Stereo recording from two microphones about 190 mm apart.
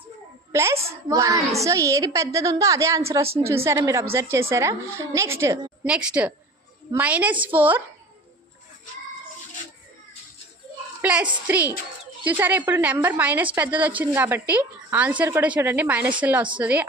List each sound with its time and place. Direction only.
0.5 s a woman's voice: 15° right (ahead or behind)
11.0 s a woman's voice: 5° right (ahead or behind)